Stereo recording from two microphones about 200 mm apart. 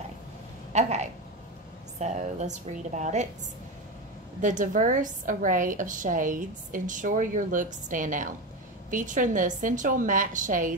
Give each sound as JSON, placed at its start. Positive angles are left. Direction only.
{"t": 0.7, "sound": "a woman's voice", "side_deg": -35}
{"t": 4.4, "sound": "a woman's voice", "side_deg": -40}